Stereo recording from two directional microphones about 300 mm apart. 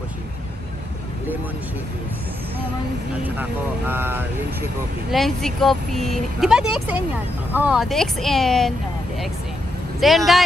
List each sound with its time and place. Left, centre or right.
3.3 s speech: centre
9.9 s speech: centre